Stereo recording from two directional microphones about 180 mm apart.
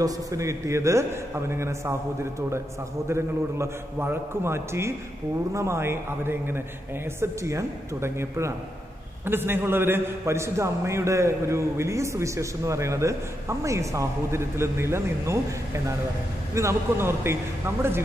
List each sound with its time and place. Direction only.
0.0 s a man's voice: 15° right (ahead or behind)
3.1 s a man's voice: 15° right (ahead or behind)